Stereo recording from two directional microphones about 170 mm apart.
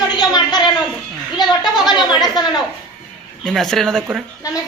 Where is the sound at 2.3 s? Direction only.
25° left (ahead or behind).